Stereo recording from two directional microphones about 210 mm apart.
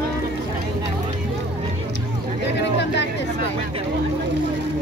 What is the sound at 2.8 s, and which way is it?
Speech, 55° left (ahead or behind).